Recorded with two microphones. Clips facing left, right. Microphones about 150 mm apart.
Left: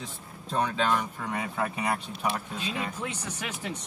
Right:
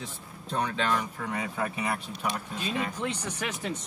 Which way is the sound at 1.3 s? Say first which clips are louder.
Left 1 dB; 30° left (ahead or behind).